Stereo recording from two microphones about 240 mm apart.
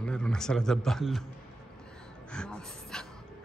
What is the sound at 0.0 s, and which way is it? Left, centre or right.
A man's voice, centre.